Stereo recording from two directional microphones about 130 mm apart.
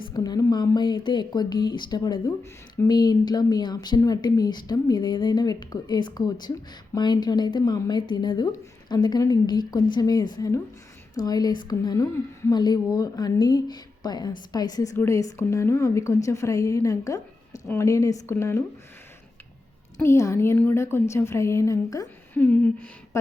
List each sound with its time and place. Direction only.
0.0 s a woman's voice: 30° left (ahead or behind)
20.0 s a woman's voice: 20° left (ahead or behind)
22.4 s a woman's voice: 10° left (ahead or behind)